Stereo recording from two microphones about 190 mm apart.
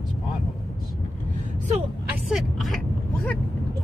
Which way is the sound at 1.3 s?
35° right (ahead or behind).